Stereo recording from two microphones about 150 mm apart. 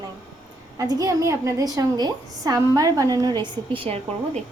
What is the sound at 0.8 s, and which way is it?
A woman's voice, 25° right (ahead or behind).